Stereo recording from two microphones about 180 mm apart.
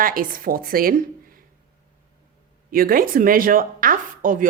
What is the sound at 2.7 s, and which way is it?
A woman's voice, 55° right (ahead or behind).